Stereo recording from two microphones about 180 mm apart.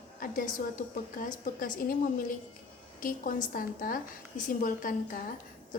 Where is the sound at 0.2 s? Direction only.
50° left (ahead or behind).